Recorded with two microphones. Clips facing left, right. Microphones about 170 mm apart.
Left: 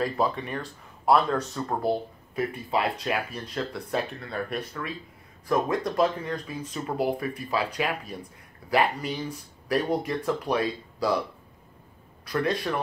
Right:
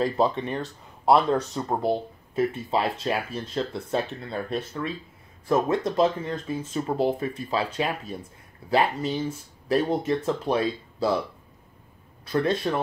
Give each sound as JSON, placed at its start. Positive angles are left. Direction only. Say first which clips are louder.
{"t": 0.0, "sound": "speech", "louder": "right 3 dB", "side_deg": -25}
{"t": 12.3, "sound": "speech", "louder": "right 3 dB", "side_deg": -25}